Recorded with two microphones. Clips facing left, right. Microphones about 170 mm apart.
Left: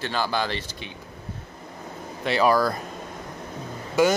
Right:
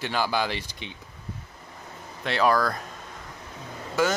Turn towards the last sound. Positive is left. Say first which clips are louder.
# left 4 dB
turn(degrees=15)  # may be behind; listen again after turning